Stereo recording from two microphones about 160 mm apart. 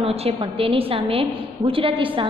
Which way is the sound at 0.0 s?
40° right (ahead or behind).